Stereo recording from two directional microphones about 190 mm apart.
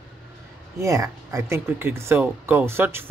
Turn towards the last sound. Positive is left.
turn(degrees=-10)  # may be behind; listen again after turning